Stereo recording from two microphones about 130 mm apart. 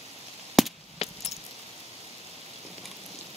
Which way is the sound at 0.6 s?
Centre (ahead or behind).